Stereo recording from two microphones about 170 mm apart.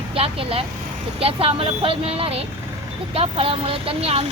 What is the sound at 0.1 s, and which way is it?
Speech, 35° right (ahead or behind).